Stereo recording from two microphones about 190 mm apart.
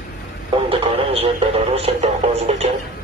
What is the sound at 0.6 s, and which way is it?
Radio, 30° right (ahead or behind).